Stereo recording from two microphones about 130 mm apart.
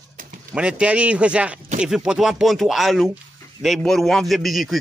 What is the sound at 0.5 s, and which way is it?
A man's voice, 10° right (ahead or behind).